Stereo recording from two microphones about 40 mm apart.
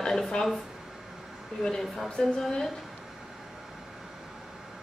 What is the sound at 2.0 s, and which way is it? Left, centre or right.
Speech, left.